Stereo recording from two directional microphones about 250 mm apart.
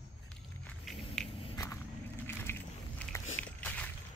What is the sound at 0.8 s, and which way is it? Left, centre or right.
Biting, centre.